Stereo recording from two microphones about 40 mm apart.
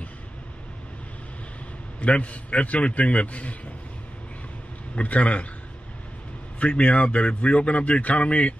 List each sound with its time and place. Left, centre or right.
2.0 s a man's voice: left
4.9 s a man's voice: left
6.6 s a man's voice: left